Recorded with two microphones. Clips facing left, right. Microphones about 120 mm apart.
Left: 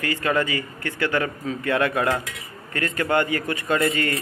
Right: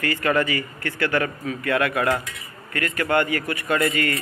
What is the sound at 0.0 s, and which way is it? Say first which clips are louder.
A man's voice: right 1 dB; 15° left (ahead or behind).